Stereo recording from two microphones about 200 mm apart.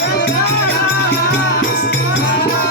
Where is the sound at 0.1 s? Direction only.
55° left (ahead or behind).